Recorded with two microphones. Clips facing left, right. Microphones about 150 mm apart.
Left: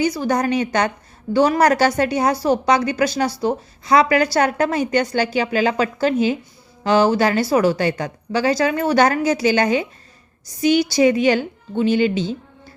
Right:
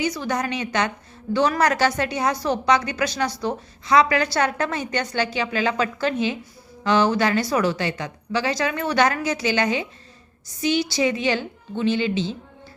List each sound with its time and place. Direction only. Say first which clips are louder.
0.0 s a woman's voice: left 5 dB; 35° left (ahead or behind)
10.8 s a woman's voice: left 7 dB; 40° left (ahead or behind)